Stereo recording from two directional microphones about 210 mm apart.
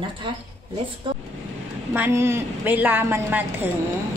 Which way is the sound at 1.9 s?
10° right (ahead or behind).